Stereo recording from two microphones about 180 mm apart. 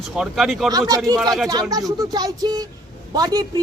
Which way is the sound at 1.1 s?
20° right (ahead or behind).